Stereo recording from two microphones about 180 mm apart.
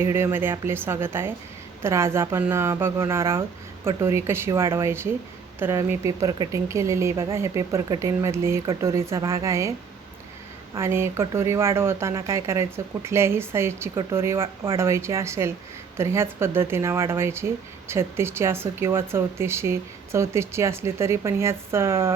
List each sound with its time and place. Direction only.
0.0 s speech: 15° right (ahead or behind)
10.8 s speech: 15° right (ahead or behind)